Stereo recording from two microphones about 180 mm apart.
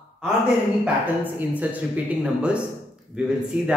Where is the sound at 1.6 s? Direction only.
5° right (ahead or behind).